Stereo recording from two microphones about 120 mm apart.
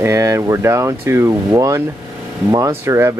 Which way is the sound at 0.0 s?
25° right (ahead or behind).